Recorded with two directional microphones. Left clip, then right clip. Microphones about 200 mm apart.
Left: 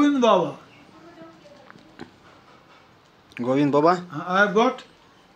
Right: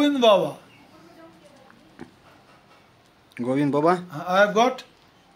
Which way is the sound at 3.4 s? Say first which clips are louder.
Left 3 dB; 15° right (ahead or behind).